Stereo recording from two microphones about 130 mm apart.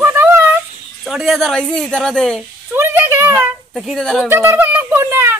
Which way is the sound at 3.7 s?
Centre (ahead or behind).